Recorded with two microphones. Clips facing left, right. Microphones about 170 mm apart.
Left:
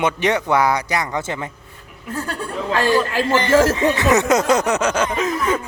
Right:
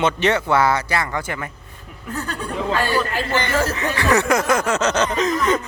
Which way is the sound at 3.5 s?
90° left.